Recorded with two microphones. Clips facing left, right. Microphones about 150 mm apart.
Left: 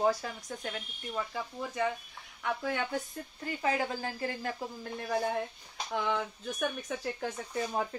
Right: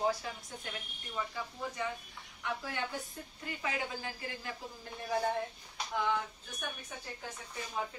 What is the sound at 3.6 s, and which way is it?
Speech, 40° left (ahead or behind).